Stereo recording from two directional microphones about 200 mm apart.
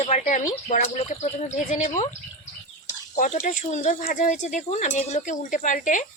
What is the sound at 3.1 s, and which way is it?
Speech, 40° left (ahead or behind).